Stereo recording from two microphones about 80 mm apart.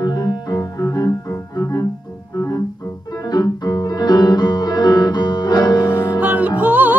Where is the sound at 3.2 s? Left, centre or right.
Left.